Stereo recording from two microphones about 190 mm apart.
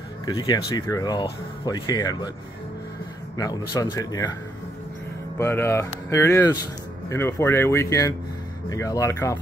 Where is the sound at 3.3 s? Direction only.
20° left (ahead or behind).